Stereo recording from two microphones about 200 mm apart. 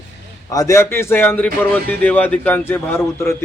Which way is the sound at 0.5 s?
15° left (ahead or behind).